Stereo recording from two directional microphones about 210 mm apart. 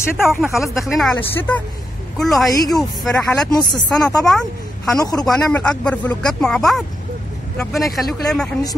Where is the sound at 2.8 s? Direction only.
Centre (ahead or behind).